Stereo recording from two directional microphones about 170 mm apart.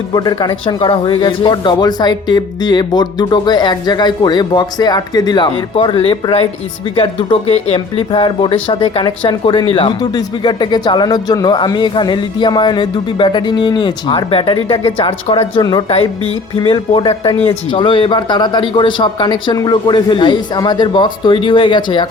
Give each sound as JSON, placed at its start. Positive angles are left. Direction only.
{"t": 0.1, "sound": "speech", "side_deg": 25}